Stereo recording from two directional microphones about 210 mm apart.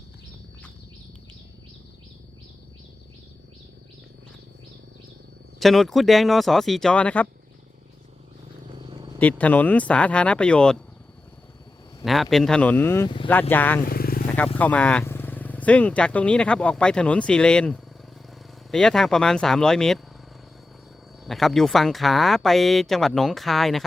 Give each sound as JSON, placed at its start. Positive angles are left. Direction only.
{"t": 5.5, "sound": "speech", "side_deg": 0}
{"t": 8.7, "sound": "a sound", "side_deg": -25}
{"t": 9.2, "sound": "speech", "side_deg": 5}
{"t": 12.0, "sound": "speech", "side_deg": 0}
{"t": 13.8, "sound": "vehicle", "side_deg": 45}
{"t": 14.3, "sound": "speech", "side_deg": 5}
{"t": 21.2, "sound": "speech", "side_deg": 0}